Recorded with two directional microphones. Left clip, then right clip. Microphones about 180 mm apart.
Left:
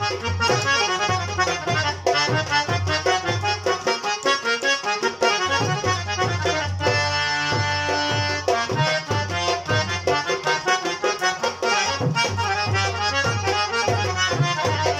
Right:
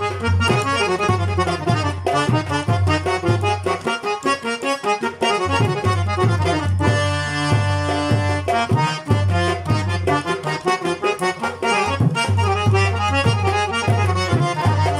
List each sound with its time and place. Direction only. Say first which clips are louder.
0.7 s accordion: right 1 dB; 25° right (ahead or behind)
2.1 s music: even; 35° right (ahead or behind)
4.8 s music: right 1 dB; 20° right (ahead or behind)
6.8 s accordion: even; 35° right (ahead or behind)
8.0 s music: right 1 dB; 30° right (ahead or behind)
10.1 s music: left 1 dB; 30° right (ahead or behind)
12.4 s accordion: right 3 dB; 25° right (ahead or behind)